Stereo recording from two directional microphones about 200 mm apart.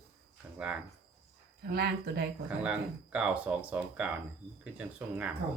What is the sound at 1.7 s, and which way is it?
Speech, 55° right (ahead or behind).